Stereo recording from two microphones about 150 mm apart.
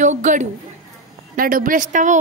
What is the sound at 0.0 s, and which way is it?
Speech, 55° right (ahead or behind).